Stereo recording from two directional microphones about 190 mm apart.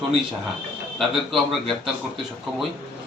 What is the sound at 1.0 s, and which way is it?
Speech, centre (ahead or behind).